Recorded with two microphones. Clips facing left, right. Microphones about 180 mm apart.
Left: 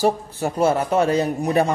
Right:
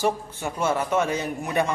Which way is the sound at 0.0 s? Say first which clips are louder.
Left 5 dB; 35° left (ahead or behind).